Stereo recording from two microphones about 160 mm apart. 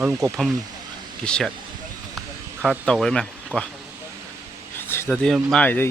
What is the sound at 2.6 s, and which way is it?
Speech, centre (ahead or behind).